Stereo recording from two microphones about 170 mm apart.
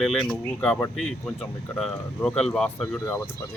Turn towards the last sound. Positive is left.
turn(degrees=15)  # may be behind; listen again after turning